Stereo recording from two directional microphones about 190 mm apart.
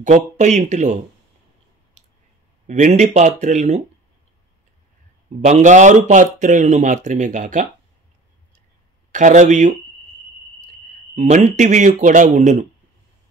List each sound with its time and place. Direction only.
0.0 s speech: 40° right (ahead or behind)
2.6 s speech: 40° right (ahead or behind)
5.4 s speech: 40° right (ahead or behind)
9.1 s speech: 40° right (ahead or behind)
11.1 s speech: 40° right (ahead or behind)